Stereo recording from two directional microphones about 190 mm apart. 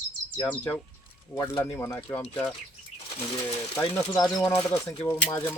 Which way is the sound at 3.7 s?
15° left (ahead or behind).